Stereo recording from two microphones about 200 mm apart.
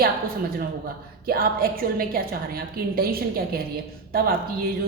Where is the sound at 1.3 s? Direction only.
45° right (ahead or behind).